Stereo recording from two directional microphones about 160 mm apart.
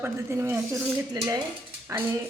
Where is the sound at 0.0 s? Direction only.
15° right (ahead or behind).